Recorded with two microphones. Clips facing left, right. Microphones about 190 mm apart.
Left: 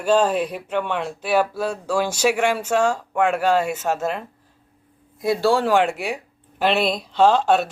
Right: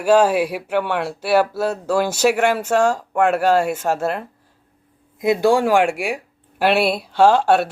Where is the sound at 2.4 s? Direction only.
45° right (ahead or behind).